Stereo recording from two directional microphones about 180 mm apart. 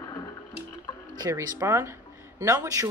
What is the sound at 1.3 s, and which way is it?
Speech, 15° right (ahead or behind).